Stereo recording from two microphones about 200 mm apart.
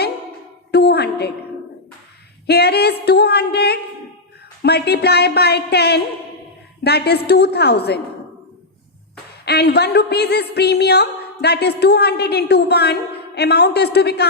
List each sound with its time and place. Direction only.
0.7 s music: 55° left (ahead or behind)
2.5 s speech: 55° left (ahead or behind)
3.0 s music: 55° left (ahead or behind)
4.6 s a woman's voice: 55° left (ahead or behind)
9.5 s a woman's voice: 55° left (ahead or behind)